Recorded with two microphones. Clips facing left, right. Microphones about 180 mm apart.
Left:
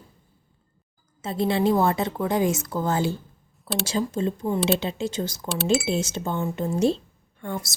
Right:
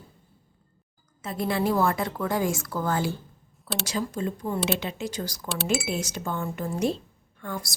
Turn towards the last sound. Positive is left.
turn(degrees=25)  # may be behind; listen again after turning